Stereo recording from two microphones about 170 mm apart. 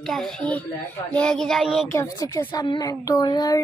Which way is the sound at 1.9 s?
20° left (ahead or behind).